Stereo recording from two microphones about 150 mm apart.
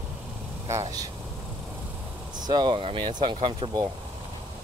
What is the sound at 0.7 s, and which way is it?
Speech, 20° right (ahead or behind).